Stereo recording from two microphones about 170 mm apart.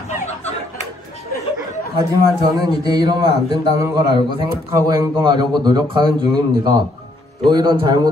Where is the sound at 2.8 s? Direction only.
25° right (ahead or behind).